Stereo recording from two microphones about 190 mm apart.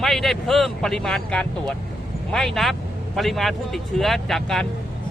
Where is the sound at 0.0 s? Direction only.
Centre (ahead or behind).